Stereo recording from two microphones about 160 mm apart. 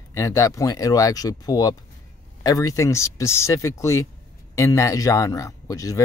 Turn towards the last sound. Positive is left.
turn(degrees=20)  # may be behind; listen again after turning